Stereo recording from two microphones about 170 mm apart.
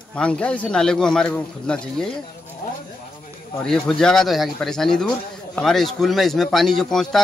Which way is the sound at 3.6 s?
5° left (ahead or behind).